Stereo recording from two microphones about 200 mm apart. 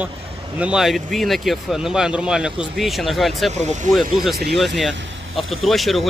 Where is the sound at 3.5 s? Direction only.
35° right (ahead or behind).